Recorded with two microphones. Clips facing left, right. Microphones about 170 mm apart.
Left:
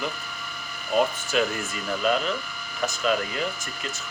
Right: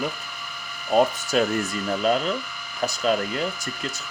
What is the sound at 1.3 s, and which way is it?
Speech, 40° right (ahead or behind).